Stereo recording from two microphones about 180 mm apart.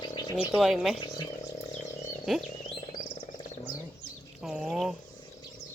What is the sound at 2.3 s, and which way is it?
Speech, centre (ahead or behind).